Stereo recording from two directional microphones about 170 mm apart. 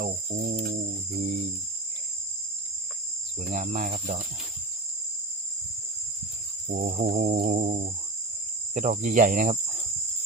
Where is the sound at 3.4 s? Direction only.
45° right (ahead or behind).